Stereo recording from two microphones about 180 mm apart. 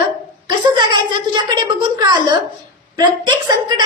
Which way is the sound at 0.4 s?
25° right (ahead or behind).